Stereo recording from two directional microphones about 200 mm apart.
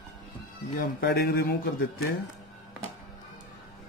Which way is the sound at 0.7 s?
55° left (ahead or behind).